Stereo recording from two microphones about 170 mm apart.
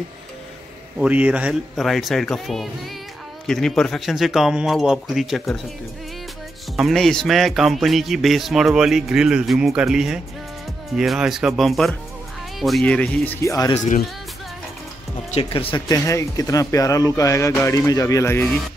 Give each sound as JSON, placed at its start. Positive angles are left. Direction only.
{"t": 0.9, "sound": "speech", "side_deg": -10}
{"t": 6.8, "sound": "speech", "side_deg": 0}
{"t": 15.3, "sound": "speech", "side_deg": 30}
{"t": 15.9, "sound": "speech", "side_deg": 20}